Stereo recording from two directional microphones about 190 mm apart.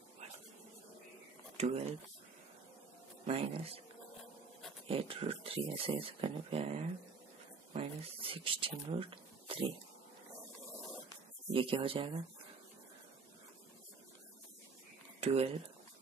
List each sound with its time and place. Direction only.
1.6 s speech: 35° right (ahead or behind)
3.3 s speech: 30° right (ahead or behind)
4.8 s speech: 30° right (ahead or behind)
11.5 s speech: 25° right (ahead or behind)
15.1 s speech: 30° right (ahead or behind)